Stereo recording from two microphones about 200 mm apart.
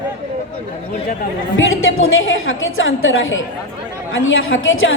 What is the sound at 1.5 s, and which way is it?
A woman's voice, 80° left.